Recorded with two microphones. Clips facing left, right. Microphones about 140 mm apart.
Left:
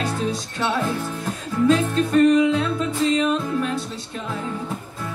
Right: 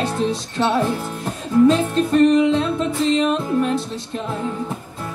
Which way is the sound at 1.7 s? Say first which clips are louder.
Right 1 dB; 25° right (ahead or behind).